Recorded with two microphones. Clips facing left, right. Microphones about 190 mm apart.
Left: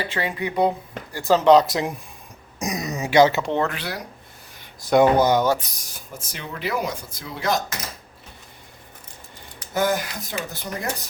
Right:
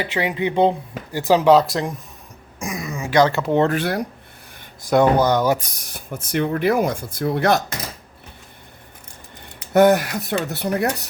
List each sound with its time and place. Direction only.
0.0 s speech: 15° right (ahead or behind); by 2.0 s 5° left (ahead or behind)
2.6 s a sound: 20° left (ahead or behind)
3.2 s speech: centre (ahead or behind)
3.7 s speech: 50° right (ahead or behind)
4.9 s speech: 5° left (ahead or behind)
5.5 s speech: 55° right (ahead or behind)
9.7 s speech: 65° right (ahead or behind)